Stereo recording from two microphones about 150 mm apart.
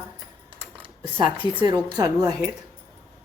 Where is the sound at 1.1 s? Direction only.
35° right (ahead or behind).